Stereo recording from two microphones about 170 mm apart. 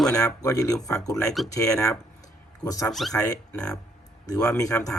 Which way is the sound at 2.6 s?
20° left (ahead or behind).